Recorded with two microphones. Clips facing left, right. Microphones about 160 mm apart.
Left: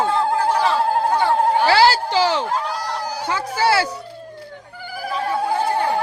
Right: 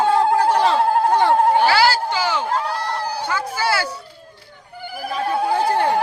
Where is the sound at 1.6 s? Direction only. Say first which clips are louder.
Left 1 dB; 30° left (ahead or behind).